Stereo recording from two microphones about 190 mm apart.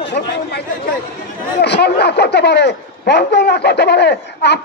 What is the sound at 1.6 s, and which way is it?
Speech, 60° left (ahead or behind).